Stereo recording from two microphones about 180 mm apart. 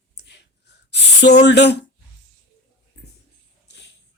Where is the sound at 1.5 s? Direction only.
70° left (ahead or behind).